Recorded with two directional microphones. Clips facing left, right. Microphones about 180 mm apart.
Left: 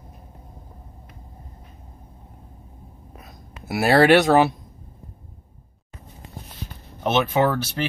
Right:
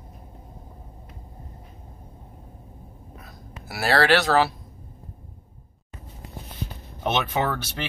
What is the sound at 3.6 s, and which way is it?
Speech, 20° left (ahead or behind).